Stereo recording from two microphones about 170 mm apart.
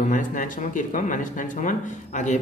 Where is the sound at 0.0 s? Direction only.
50° left (ahead or behind).